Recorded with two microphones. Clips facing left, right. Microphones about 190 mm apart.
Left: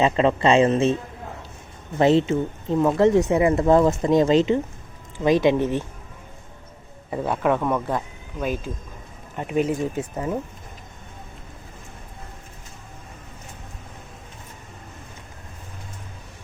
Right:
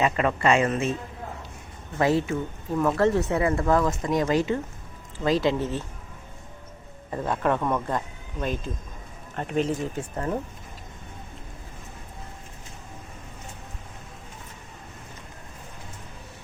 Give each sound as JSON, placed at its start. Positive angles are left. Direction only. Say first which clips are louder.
{"t": 0.0, "sound": "speech", "louder": "left 4 dB", "side_deg": 25}
{"t": 2.0, "sound": "speech", "louder": "left 5 dB", "side_deg": 25}
{"t": 7.1, "sound": "speech", "louder": "left 3 dB", "side_deg": 10}